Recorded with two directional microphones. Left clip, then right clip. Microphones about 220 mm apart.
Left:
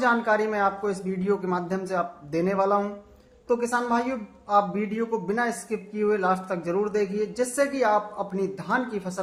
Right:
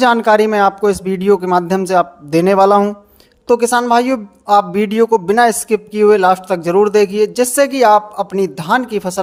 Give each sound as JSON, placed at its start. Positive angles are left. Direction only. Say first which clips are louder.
{"t": 0.0, "sound": "speech", "louder": "right 12 dB", "side_deg": -40}